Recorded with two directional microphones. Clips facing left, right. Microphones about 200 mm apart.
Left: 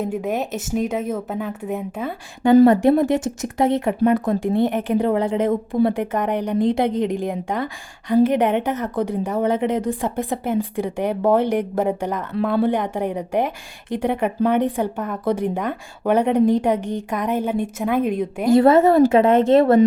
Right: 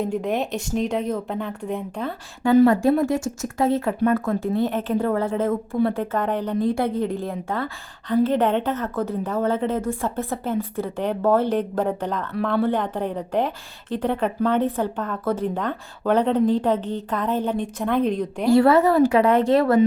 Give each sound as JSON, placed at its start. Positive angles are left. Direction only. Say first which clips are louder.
{"t": 0.0, "sound": "a woman's voice", "louder": "even", "side_deg": 5}
{"t": 2.6, "sound": "speech", "louder": "left 3 dB", "side_deg": 20}
{"t": 18.5, "sound": "a woman's voice", "louder": "left 3 dB", "side_deg": 20}